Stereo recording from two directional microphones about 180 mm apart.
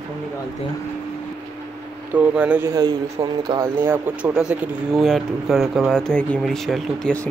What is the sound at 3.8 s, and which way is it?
Speech, 10° right (ahead or behind).